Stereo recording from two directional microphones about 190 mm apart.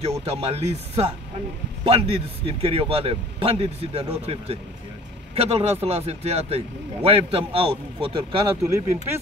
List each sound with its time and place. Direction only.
0.2 s a man's voice: 30° right (ahead or behind)
8.6 s speech: 15° right (ahead or behind)